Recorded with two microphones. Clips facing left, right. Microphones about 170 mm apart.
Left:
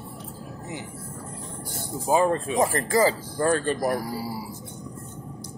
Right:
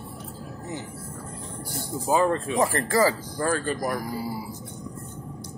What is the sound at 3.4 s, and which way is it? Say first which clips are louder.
Speech: left 3 dB; 30° left (ahead or behind).